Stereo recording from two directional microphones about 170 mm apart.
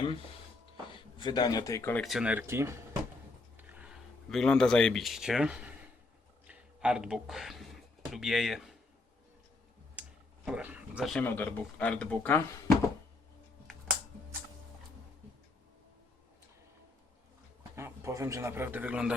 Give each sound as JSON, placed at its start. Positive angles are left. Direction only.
{"t": 1.2, "sound": "speech", "side_deg": 25}
{"t": 2.0, "sound": "speech", "side_deg": -5}
{"t": 6.5, "sound": "a sound", "side_deg": -5}
{"t": 9.9, "sound": "clicking", "side_deg": -5}
{"t": 11.2, "sound": "speech", "side_deg": 10}
{"t": 17.6, "sound": "a man's voice", "side_deg": -15}